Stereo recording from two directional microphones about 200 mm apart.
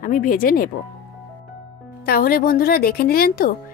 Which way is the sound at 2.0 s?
50° left (ahead or behind).